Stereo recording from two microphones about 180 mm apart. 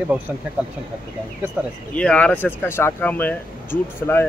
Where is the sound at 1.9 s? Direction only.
5° left (ahead or behind).